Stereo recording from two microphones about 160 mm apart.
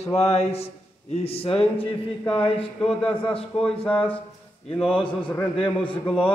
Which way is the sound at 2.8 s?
5° left (ahead or behind).